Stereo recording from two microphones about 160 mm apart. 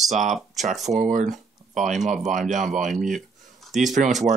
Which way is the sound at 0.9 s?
50° right (ahead or behind).